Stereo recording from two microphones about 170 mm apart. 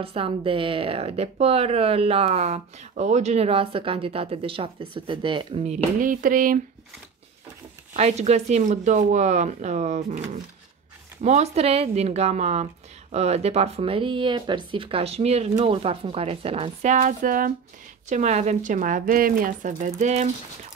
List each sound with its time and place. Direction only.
0.0 s speech: 35° right (ahead or behind)
5.9 s speech: 55° right (ahead or behind)
7.9 s speech: 40° right (ahead or behind)
11.2 s speech: 40° right (ahead or behind)
16.9 s speech: 50° right (ahead or behind)